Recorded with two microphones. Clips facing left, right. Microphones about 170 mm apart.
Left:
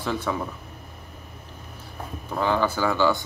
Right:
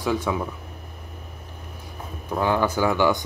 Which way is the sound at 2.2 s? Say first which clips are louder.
Right 1 dB; 10° right (ahead or behind).